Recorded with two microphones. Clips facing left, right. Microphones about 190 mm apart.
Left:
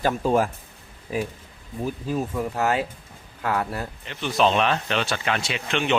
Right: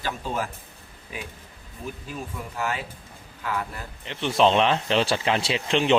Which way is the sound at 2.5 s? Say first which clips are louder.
Left 5 dB; 40° left (ahead or behind).